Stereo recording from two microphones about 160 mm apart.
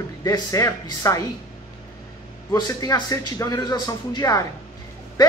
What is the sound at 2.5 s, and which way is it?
Speech, 20° left (ahead or behind).